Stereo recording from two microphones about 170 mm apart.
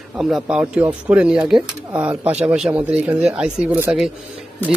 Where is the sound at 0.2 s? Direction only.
5° right (ahead or behind).